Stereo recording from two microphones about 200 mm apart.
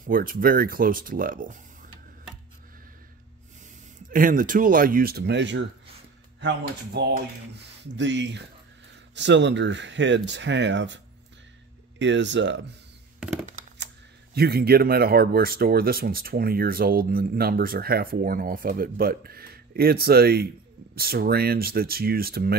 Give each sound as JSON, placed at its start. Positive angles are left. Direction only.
{"t": 0.0, "sound": "speech", "side_deg": -45}
{"t": 4.1, "sound": "speech", "side_deg": -45}
{"t": 12.0, "sound": "speech", "side_deg": -65}
{"t": 13.2, "sound": "a sound", "side_deg": -5}
{"t": 14.3, "sound": "speech", "side_deg": -50}